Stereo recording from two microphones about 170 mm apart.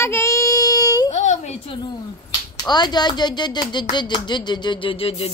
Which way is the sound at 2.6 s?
25° left (ahead or behind).